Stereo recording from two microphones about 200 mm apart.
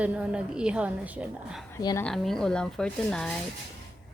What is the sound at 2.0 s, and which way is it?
A woman's voice, centre (ahead or behind).